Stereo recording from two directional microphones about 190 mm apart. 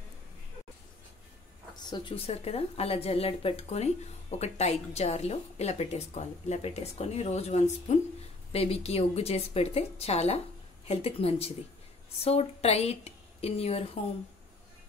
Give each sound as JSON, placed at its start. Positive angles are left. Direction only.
{"t": 1.8, "sound": "a woman's voice", "side_deg": 25}